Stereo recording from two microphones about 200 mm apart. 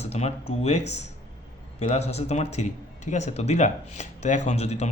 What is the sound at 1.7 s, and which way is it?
Speech, 35° left (ahead or behind).